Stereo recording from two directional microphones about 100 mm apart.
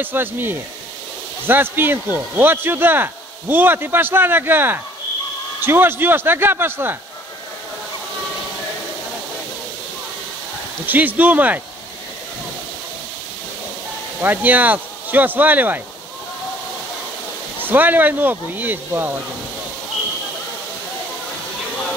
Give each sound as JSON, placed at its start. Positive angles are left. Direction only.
{"t": 0.0, "sound": "speech", "side_deg": -20}
{"t": 10.9, "sound": "speech", "side_deg": -15}
{"t": 14.2, "sound": "speech", "side_deg": -15}
{"t": 17.6, "sound": "speech", "side_deg": -20}